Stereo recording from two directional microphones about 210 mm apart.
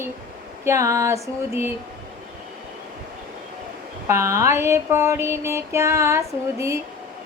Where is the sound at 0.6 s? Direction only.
15° right (ahead or behind).